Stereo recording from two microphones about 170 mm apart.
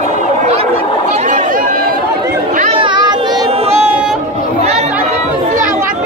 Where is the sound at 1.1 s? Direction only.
50° right (ahead or behind).